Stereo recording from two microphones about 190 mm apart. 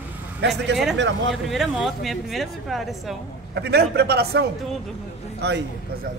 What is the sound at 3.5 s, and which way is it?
A man's voice, 60° right (ahead or behind).